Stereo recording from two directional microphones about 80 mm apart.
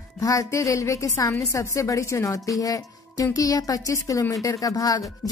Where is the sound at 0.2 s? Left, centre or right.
Left.